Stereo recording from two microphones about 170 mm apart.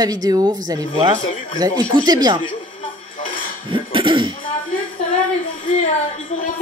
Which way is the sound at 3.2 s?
55° left (ahead or behind).